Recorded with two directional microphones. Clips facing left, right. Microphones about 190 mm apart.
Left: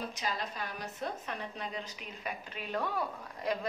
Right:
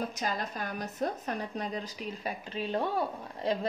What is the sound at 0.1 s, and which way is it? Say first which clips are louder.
A woman's voice: right 3 dB; 45° right (ahead or behind).